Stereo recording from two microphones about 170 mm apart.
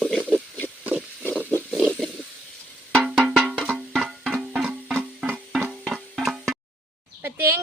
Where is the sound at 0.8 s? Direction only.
10° right (ahead or behind).